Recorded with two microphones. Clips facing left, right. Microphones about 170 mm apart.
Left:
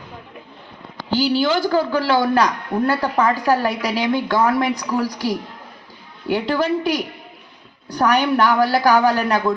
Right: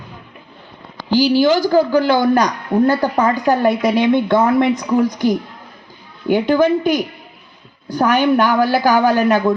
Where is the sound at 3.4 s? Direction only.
20° right (ahead or behind).